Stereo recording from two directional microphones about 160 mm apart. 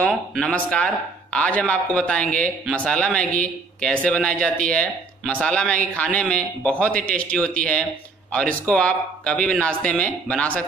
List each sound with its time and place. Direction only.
0.0 s speech: 5° left (ahead or behind)